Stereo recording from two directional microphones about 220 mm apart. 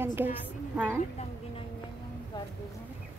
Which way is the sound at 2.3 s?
20° left (ahead or behind).